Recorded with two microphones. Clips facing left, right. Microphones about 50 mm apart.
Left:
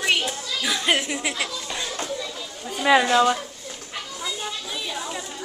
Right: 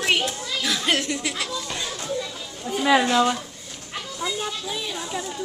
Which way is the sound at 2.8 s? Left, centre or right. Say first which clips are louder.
Left 2 dB; centre.